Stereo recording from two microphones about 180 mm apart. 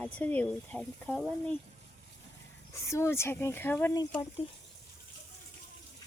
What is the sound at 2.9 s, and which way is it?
Speech, 15° left (ahead or behind).